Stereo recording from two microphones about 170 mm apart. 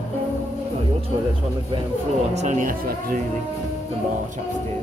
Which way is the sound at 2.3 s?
45° right (ahead or behind).